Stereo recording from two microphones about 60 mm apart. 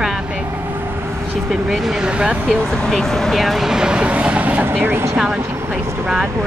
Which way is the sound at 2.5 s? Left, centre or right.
Centre.